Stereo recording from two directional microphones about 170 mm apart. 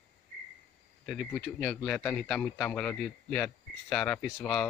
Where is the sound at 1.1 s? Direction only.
Centre (ahead or behind).